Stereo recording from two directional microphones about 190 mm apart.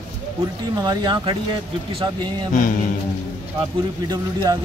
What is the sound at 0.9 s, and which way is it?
Speech, 20° right (ahead or behind).